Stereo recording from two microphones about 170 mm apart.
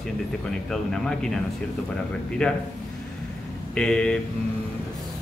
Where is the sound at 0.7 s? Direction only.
5° left (ahead or behind).